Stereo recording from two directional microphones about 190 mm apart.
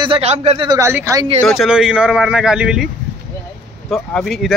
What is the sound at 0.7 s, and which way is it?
Speech, 15° right (ahead or behind).